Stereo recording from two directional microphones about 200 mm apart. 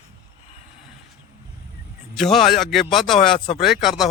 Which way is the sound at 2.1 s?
Centre (ahead or behind).